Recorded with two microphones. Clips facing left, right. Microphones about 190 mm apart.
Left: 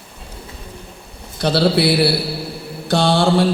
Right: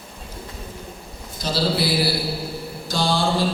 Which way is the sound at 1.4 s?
65° left (ahead or behind).